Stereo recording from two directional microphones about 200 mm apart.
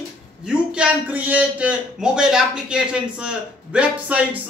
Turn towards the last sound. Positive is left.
turn(degrees=-5)  # may be behind; listen again after turning